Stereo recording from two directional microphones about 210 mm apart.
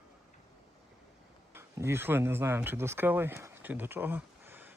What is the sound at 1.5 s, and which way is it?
Speech, 10° right (ahead or behind).